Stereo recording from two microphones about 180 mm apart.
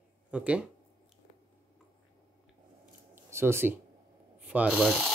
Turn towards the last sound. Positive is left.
turn(degrees=0)  # may be behind; listen again after turning